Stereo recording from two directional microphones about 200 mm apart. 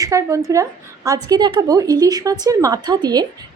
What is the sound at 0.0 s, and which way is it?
A woman's voice, 15° right (ahead or behind).